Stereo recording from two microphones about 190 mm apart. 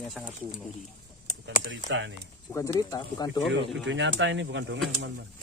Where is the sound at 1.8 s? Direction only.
75° right (ahead or behind).